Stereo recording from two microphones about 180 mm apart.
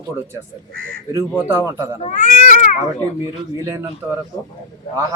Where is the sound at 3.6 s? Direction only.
15° right (ahead or behind).